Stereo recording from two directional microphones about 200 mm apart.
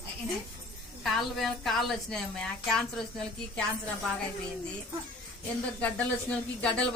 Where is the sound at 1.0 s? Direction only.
Centre (ahead or behind).